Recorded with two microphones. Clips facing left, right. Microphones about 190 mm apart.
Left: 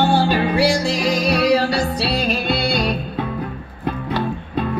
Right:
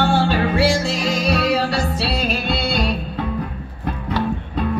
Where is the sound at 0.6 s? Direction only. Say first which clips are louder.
Left 1 dB; 25° right (ahead or behind).